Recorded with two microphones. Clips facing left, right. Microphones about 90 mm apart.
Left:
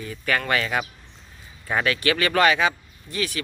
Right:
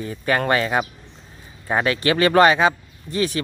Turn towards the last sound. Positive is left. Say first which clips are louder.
# right 6 dB
turn(degrees=-30)  # may be behind; listen again after turning